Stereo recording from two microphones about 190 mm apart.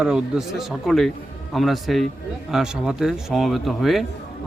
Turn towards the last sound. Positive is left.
turn(degrees=0)  # may be behind; listen again after turning